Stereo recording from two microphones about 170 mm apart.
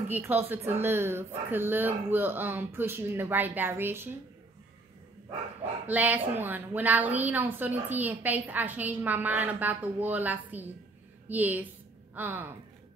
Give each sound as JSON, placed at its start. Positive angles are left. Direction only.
{"t": 0.1, "sound": "a woman's voice", "side_deg": -10}
{"t": 5.9, "sound": "a woman's voice", "side_deg": -10}